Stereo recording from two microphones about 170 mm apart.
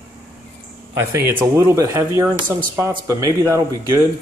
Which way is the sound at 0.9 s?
15° right (ahead or behind).